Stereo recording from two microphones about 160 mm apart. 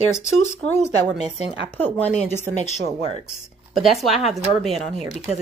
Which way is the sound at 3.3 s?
Centre (ahead or behind).